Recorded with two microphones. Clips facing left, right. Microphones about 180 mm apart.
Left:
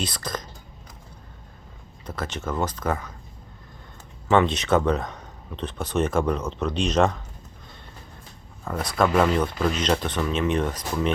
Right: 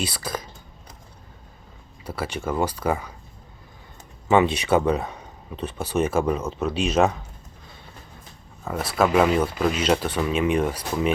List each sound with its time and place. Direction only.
0.0 s speech: 10° right (ahead or behind)
2.0 s speech: 10° right (ahead or behind)
4.3 s speech: 10° right (ahead or behind)
8.6 s speech: 5° right (ahead or behind)